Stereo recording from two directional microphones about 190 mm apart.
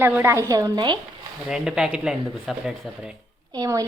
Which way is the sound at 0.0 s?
10° right (ahead or behind).